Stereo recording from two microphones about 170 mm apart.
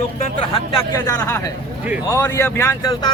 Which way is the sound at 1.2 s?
15° left (ahead or behind).